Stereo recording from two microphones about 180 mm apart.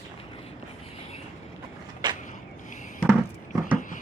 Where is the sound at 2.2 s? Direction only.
45° left (ahead or behind).